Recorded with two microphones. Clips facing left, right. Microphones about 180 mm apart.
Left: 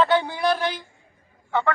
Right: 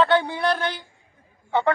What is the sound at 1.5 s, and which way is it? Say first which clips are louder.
Speech: right 2 dB; 25° right (ahead or behind).